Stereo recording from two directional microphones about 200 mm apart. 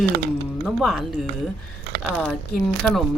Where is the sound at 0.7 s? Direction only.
Centre (ahead or behind).